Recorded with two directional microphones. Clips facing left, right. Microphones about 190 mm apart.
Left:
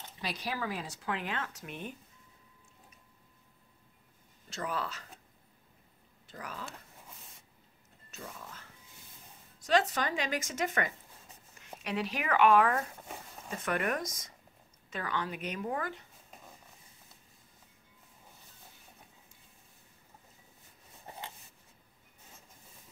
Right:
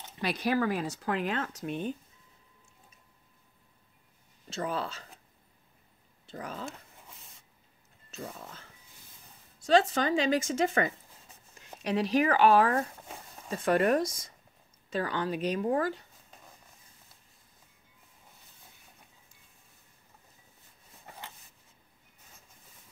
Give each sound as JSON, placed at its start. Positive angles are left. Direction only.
{"t": 0.2, "sound": "speech", "side_deg": -55}
{"t": 4.5, "sound": "speech", "side_deg": -25}
{"t": 6.2, "sound": "speech", "side_deg": -25}
{"t": 8.2, "sound": "speech", "side_deg": -35}